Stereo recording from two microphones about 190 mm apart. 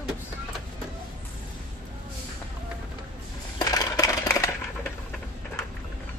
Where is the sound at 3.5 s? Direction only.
20° left (ahead or behind).